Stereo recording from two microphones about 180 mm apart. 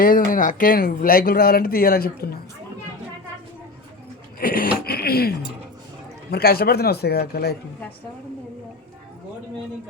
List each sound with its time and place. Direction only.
0.0 s speech: 50° left (ahead or behind)
4.4 s a sound: 50° left (ahead or behind)
4.9 s speech: 60° left (ahead or behind)
6.3 s speech: 55° left (ahead or behind)